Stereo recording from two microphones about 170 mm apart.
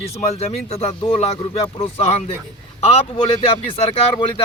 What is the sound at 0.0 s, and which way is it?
Speech, 35° left (ahead or behind).